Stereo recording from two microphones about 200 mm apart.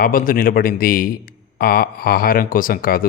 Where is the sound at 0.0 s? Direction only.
45° left (ahead or behind).